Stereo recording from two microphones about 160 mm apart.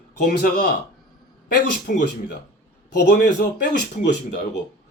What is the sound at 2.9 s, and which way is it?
Speech, 75° left (ahead or behind).